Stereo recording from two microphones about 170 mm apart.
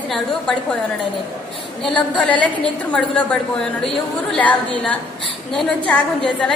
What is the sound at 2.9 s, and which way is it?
A woman's voice, 5° left (ahead or behind).